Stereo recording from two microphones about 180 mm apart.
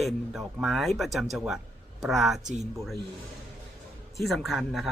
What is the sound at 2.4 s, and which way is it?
Speech, 40° right (ahead or behind).